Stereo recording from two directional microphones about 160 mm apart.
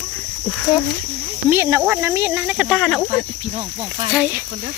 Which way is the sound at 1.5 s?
15° right (ahead or behind).